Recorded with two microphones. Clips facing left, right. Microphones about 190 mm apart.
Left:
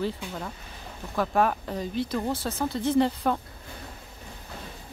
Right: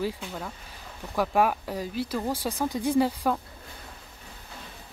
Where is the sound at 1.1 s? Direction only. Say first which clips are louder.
Even; 10° right (ahead or behind).